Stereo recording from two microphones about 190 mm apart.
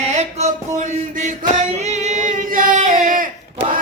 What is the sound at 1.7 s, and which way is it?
Singing, 35° right (ahead or behind).